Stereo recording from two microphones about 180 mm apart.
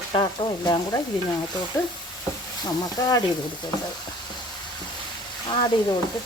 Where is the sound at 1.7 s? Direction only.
20° left (ahead or behind).